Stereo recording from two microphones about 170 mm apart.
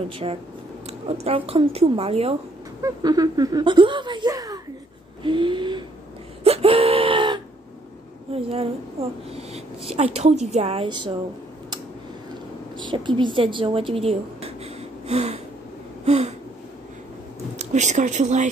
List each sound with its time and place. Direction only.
0.1 s a woman's voice: 35° right (ahead or behind)
2.8 s speech: 20° right (ahead or behind)
6.4 s a sound: 35° right (ahead or behind)
8.3 s a woman's voice: 35° right (ahead or behind)
12.7 s a woman's voice: 25° right (ahead or behind)
17.6 s speech: 45° right (ahead or behind)